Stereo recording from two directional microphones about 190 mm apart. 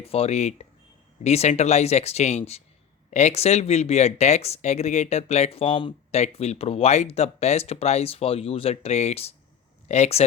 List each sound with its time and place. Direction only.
0.0 s speech: 30° left (ahead or behind)